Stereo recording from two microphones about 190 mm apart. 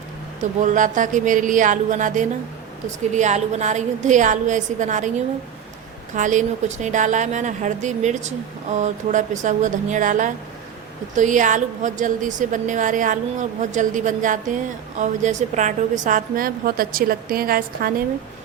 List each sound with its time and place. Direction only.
0.6 s a woman's voice: 40° right (ahead or behind)
6.1 s a woman's voice: 40° right (ahead or behind)